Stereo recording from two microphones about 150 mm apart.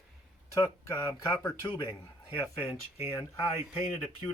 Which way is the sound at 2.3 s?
10° left (ahead or behind).